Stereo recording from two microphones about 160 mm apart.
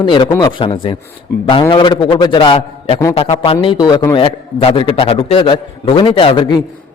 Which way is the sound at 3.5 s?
25° left (ahead or behind).